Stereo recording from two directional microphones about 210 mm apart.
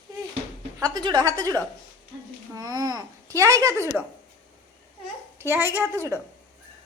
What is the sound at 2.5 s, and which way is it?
A child's voice, 20° right (ahead or behind).